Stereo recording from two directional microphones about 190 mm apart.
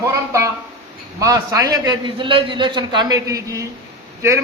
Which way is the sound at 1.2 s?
20° right (ahead or behind).